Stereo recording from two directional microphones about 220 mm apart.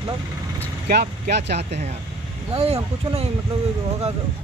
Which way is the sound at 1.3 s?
50° right (ahead or behind).